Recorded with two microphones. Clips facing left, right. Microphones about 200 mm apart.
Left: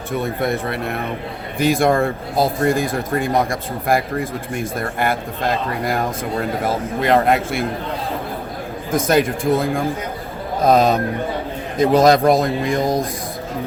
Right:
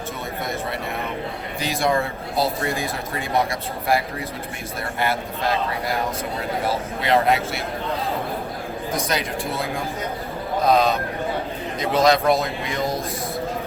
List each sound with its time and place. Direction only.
1.5 s speech: 50° left (ahead or behind)
8.9 s speech: 50° left (ahead or behind)